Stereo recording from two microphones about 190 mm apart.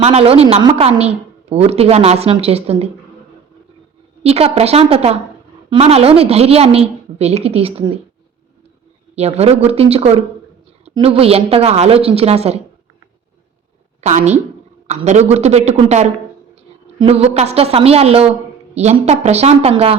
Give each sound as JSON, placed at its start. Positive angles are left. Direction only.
{"t": 0.0, "sound": "a woman's voice", "side_deg": -35}
{"t": 4.2, "sound": "a woman's voice", "side_deg": -30}
{"t": 9.1, "sound": "a woman's voice", "side_deg": -35}
{"t": 14.0, "sound": "a woman's voice", "side_deg": -35}